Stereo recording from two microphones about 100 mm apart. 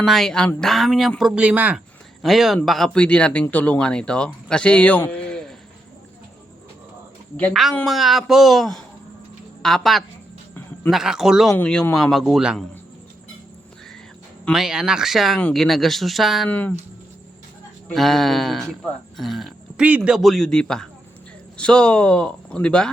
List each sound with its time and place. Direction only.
0.0 s speech: centre (ahead or behind)
1.2 s speech: 15° right (ahead or behind)
2.2 s speech: centre (ahead or behind)
7.9 s speech: centre (ahead or behind)
11.5 s speech: 10° left (ahead or behind)
11.9 s speech: centre (ahead or behind)
14.5 s speech: 5° right (ahead or behind)
16.5 s speech: 15° left (ahead or behind)
17.9 s speech: centre (ahead or behind)